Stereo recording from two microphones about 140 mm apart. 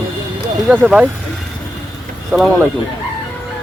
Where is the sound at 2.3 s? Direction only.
Centre (ahead or behind).